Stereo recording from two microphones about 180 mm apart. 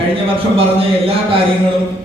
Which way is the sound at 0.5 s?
30° right (ahead or behind).